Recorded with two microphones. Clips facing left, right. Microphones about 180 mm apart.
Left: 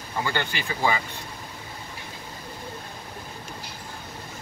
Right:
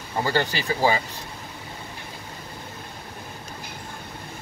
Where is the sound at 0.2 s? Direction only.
35° right (ahead or behind).